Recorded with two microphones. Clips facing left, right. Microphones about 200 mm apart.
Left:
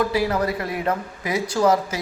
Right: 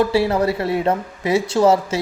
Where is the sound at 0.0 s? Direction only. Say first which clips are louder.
Right 4 dB; 30° right (ahead or behind).